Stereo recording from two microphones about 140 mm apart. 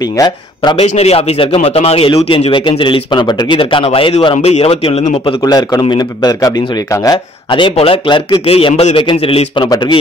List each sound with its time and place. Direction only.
0.0 s a man's voice: 25° left (ahead or behind)
0.7 s speech: 50° left (ahead or behind)
4.4 s a man's voice: 50° left (ahead or behind)
5.2 s a man's voice: 30° left (ahead or behind)
7.4 s speech: 40° left (ahead or behind)
9.7 s speech: 30° left (ahead or behind)